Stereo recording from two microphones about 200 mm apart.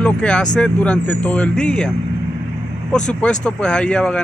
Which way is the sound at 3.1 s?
5° left (ahead or behind).